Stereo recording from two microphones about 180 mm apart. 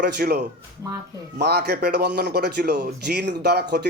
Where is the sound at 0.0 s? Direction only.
60° right (ahead or behind).